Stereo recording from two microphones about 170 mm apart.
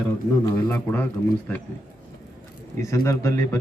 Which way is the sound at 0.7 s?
10° left (ahead or behind).